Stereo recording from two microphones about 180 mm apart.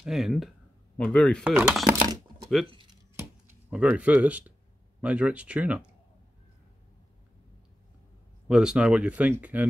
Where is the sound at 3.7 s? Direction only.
10° right (ahead or behind).